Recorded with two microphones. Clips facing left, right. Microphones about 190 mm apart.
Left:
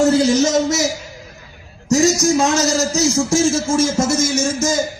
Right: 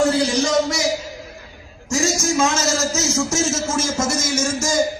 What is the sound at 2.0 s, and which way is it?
A man's voice, 40° left (ahead or behind).